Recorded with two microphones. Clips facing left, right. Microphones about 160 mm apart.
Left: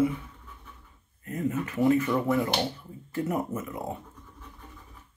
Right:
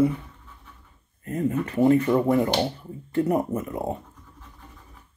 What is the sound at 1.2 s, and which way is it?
Speech, 40° right (ahead or behind).